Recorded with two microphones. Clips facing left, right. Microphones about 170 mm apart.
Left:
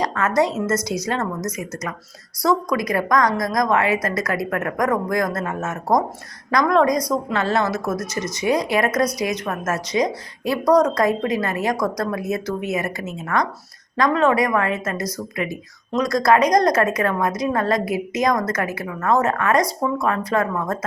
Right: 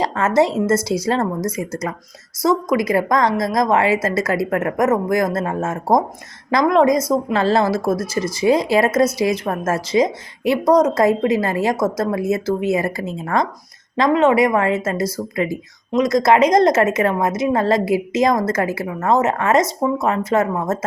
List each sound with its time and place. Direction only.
0.0 s speech: 25° right (ahead or behind)